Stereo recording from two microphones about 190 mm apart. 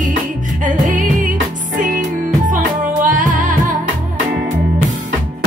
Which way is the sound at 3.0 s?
40° right (ahead or behind).